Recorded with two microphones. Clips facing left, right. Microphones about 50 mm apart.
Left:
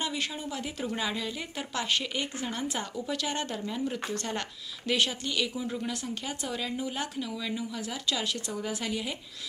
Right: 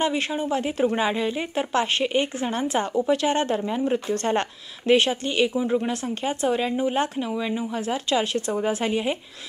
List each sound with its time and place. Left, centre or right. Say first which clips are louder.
0.0 s speech: right 9 dB; right